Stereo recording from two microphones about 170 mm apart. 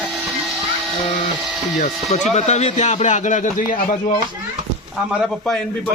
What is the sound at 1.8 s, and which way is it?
Speech, 40° left (ahead or behind).